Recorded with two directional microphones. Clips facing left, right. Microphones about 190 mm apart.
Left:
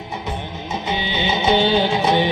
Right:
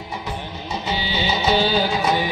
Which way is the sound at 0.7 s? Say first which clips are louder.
Left 1 dB; 20° left (ahead or behind).